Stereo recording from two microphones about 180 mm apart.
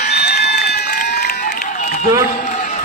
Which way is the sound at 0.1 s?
65° left (ahead or behind).